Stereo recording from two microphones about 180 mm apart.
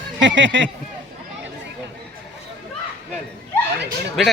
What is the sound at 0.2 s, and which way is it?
Speech, 90° right.